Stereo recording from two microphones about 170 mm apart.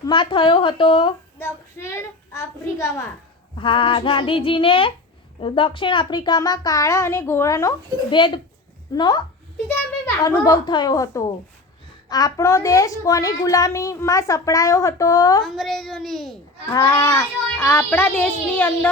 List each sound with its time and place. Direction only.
0.0 s a woman's voice: 30° left (ahead or behind)
1.4 s a child's voice: 15° left (ahead or behind)
3.5 s child singing: 30° left (ahead or behind)
5.4 s a woman's voice: 30° left (ahead or behind)
10.2 s a woman's voice: 20° left (ahead or behind)
15.4 s a woman's voice: centre (ahead or behind)
16.7 s a child's voice: 20° left (ahead or behind)